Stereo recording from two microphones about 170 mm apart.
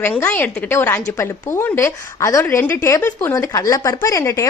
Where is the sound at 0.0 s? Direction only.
15° left (ahead or behind).